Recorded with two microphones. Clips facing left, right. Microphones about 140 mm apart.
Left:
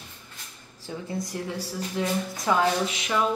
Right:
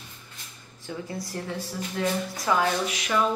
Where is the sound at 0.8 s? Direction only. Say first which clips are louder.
Left 2 dB; 25° left (ahead or behind).